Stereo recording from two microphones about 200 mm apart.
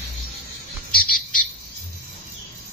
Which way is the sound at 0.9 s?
45° left (ahead or behind).